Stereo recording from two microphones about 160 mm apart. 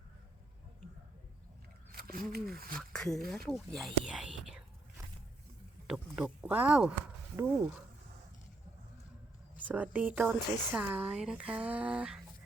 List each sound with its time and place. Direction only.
1.9 s a sound: 70° right (ahead or behind)
2.7 s speech: 5° left (ahead or behind)
5.9 s speech: 5° right (ahead or behind)
9.6 s speech: 10° right (ahead or behind)